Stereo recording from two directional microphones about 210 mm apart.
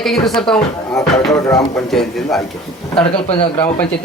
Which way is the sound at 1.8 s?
Centre (ahead or behind).